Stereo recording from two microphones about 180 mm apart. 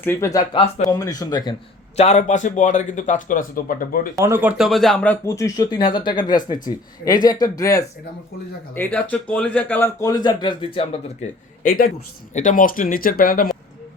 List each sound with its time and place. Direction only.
0.0 s speech: 15° left (ahead or behind)
2.0 s speech: 40° left (ahead or behind)
4.2 s speech: 10° right (ahead or behind); by 10.7 s 25° left (ahead or behind)
11.2 s speech: 40° left (ahead or behind)
11.6 s a man's voice: 55° left (ahead or behind)
12.3 s speech: 45° left (ahead or behind)